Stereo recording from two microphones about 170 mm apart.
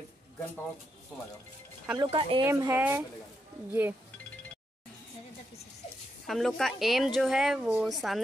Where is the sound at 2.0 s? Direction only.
30° right (ahead or behind).